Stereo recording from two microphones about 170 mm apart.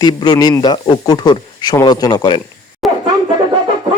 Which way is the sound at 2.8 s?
Centre (ahead or behind).